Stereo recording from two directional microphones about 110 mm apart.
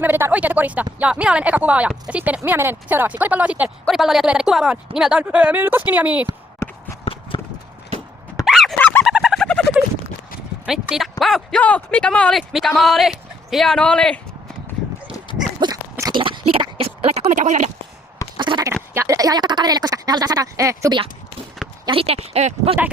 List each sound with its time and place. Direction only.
0.0 s speech: 20° right (ahead or behind)
3.8 s speech: centre (ahead or behind)
7.0 s clip-clop: 60° left (ahead or behind)
8.4 s dog: centre (ahead or behind)
8.8 s fowl: 20° left (ahead or behind)
9.1 s a sound: centre (ahead or behind)
10.7 s speech: 5° right (ahead or behind)
11.6 s speech: 15° left (ahead or behind)
12.4 s speech: centre (ahead or behind)
15.6 s a sound: 40° right (ahead or behind)
16.1 s speech: 50° right (ahead or behind); by 17.7 s 90° right
18.3 s a sound: 45° right (ahead or behind)
18.9 s a woman's voice: 30° right (ahead or behind)
21.8 s speech: 60° right (ahead or behind); by 22.7 s 80° right